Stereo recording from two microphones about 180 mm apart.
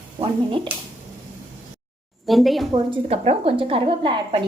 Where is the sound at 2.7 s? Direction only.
30° right (ahead or behind).